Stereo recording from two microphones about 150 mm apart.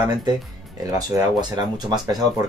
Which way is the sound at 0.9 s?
25° right (ahead or behind).